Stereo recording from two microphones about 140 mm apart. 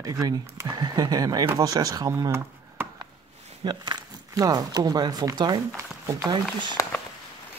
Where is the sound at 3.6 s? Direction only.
30° right (ahead or behind).